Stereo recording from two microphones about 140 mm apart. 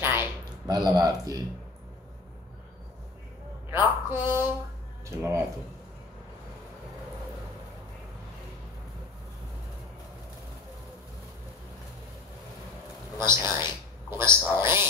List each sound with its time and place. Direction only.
0.0 s a sound: 15° right (ahead or behind)
0.7 s speech: 30° right (ahead or behind)
3.8 s speech: 15° right (ahead or behind)
13.2 s a man's voice: 20° right (ahead or behind)